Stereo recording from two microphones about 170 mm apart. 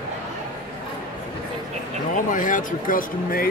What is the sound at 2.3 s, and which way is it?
Speech, 50° left (ahead or behind).